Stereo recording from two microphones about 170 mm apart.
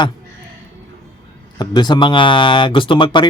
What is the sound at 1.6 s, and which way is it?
Speech, 25° left (ahead or behind).